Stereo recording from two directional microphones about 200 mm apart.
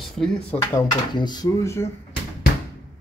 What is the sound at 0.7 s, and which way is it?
Speech, 20° left (ahead or behind).